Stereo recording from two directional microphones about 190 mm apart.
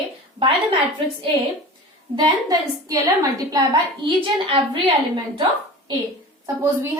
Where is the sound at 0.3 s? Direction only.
30° right (ahead or behind).